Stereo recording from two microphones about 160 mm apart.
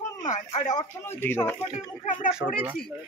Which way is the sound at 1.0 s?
15° left (ahead or behind).